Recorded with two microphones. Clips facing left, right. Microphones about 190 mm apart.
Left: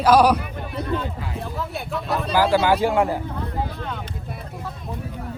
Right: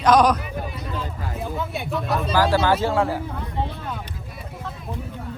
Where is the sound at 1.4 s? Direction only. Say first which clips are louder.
Right 3 dB; centre (ahead or behind).